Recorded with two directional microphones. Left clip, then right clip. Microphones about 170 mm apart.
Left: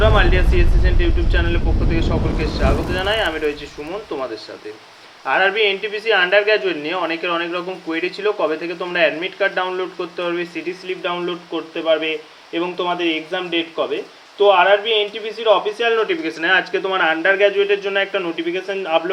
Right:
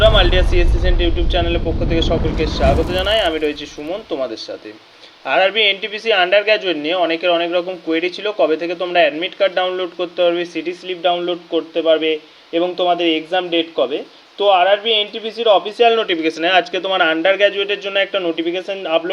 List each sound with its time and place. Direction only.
0.0 s speech: 45° right (ahead or behind)
5.2 s speech: 45° right (ahead or behind)